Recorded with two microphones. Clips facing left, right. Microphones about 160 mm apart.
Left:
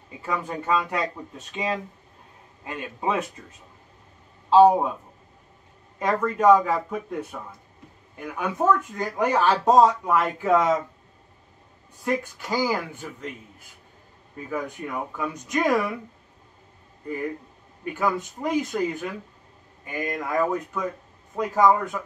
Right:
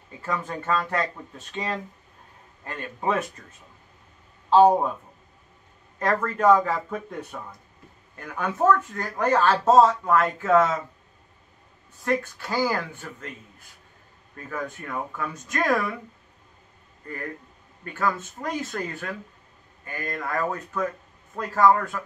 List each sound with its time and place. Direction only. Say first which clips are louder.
0.2 s speech: left 1 dB; 10° left (ahead or behind)
5.9 s speech: left 1 dB; 5° left (ahead or behind)
12.0 s speech: right 1 dB; 15° left (ahead or behind)
14.3 s speech: left 2 dB; 15° left (ahead or behind)
17.8 s speech: left 2 dB; 15° left (ahead or behind)